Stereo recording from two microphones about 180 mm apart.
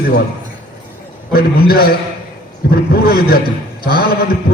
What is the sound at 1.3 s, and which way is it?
A man's voice, 60° left (ahead or behind).